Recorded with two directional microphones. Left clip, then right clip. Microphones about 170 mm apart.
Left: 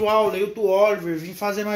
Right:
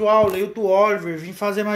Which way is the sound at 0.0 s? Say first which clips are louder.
Right 3 dB; 15° right (ahead or behind).